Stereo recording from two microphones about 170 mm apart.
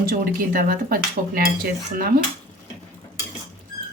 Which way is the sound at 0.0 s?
55° right (ahead or behind).